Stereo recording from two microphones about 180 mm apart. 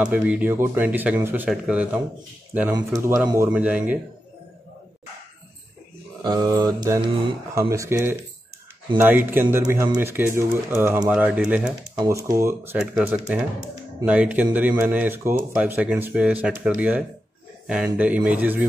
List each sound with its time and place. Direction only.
0.0 s speech: 5° right (ahead or behind)
2.7 s speech: 20° right (ahead or behind)
6.2 s mantra: 20° right (ahead or behind)
7.5 s speech: 15° right (ahead or behind)
12.7 s speech: 5° right (ahead or behind)